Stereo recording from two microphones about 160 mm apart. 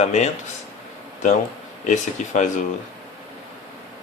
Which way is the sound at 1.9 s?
50° left (ahead or behind).